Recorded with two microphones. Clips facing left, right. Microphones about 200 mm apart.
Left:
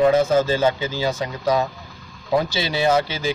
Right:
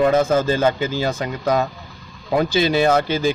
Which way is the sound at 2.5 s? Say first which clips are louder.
Right 3 dB; 50° right (ahead or behind).